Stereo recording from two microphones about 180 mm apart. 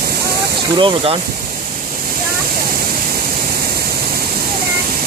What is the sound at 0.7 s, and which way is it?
Speech, 30° right (ahead or behind).